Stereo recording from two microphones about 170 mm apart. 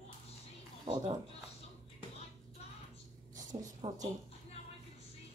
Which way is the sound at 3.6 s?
20° right (ahead or behind).